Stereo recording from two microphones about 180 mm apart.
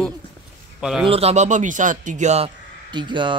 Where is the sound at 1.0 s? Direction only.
35° right (ahead or behind).